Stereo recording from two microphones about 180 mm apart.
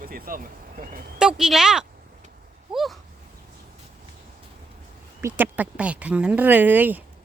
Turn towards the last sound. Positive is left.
turn(degrees=-10)  # may be behind; listen again after turning